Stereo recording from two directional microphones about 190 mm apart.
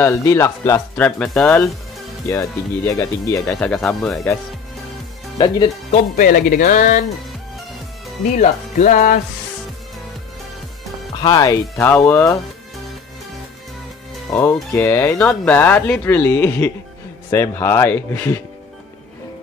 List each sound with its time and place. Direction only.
0.0 s speech: 15° left (ahead or behind)
2.2 s speech: 15° left (ahead or behind)
3.7 s speech: centre (ahead or behind)
5.9 s speech: 50° left (ahead or behind)
8.4 s speech: 45° left (ahead or behind)
11.1 s speech: 20° left (ahead or behind)
14.3 s speech: 15° left (ahead or behind)